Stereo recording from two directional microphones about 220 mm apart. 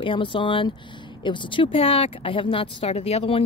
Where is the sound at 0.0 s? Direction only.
20° left (ahead or behind).